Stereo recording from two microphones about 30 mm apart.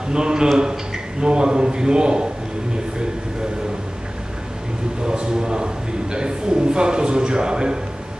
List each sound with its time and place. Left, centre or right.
0.1 s a man's voice: right
5.0 s a man's voice: right